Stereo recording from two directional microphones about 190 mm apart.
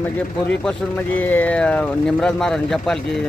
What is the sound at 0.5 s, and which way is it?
Speech, 5° left (ahead or behind).